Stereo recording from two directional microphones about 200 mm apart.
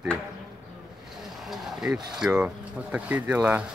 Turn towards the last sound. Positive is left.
turn(degrees=-5)  # may be behind; listen again after turning